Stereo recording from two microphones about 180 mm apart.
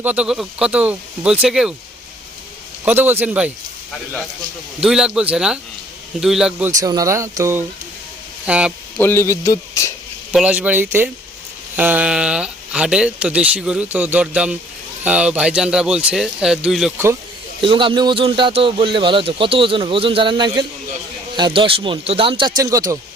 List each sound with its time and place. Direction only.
0.0 s a man's voice: 10° right (ahead or behind)
2.8 s speech: 10° right (ahead or behind)
4.8 s a man's voice: 5° right (ahead or behind)
6.7 s speech: 20° right (ahead or behind)
9.0 s speech: 15° left (ahead or behind)
10.3 s a man's voice: 5° right (ahead or behind)
17.6 s a man's voice: 30° right (ahead or behind)